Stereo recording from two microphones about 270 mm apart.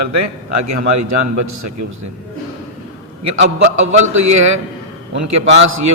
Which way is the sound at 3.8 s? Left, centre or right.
Right.